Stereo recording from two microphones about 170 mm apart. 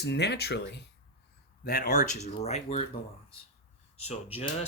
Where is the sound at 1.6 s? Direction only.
60° left (ahead or behind); by 2.8 s 40° left (ahead or behind).